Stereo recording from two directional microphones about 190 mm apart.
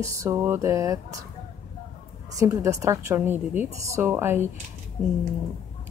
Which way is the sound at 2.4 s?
15° right (ahead or behind).